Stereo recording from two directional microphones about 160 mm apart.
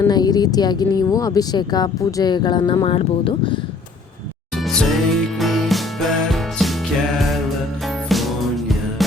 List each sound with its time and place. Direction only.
0.1 s speech: 25° left (ahead or behind)
4.5 s music: centre (ahead or behind)
8.1 s music: centre (ahead or behind)